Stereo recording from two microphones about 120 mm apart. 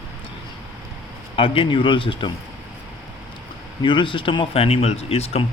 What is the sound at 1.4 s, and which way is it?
Speech, 45° left (ahead or behind).